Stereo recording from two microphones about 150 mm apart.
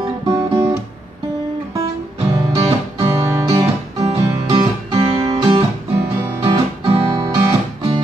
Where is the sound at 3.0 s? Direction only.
20° right (ahead or behind).